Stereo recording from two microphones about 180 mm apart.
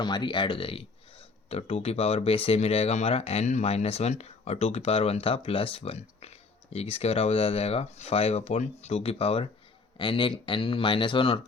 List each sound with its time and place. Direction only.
0.0 s speech: 25° left (ahead or behind)